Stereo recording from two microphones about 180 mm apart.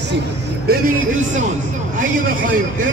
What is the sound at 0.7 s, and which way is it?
A man's voice, 45° right (ahead or behind).